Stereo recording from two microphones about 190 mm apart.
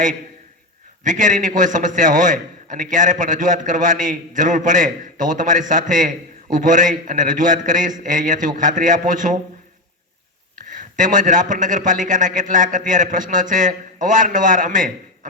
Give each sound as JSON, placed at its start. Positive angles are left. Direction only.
{"t": 1.0, "sound": "a man's voice", "side_deg": -40}
{"t": 10.5, "sound": "a man's voice", "side_deg": -45}